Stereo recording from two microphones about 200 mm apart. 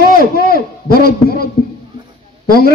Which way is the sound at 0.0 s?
50° left (ahead or behind).